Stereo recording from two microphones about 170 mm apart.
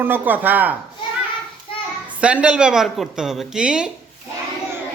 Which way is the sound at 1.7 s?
30° left (ahead or behind).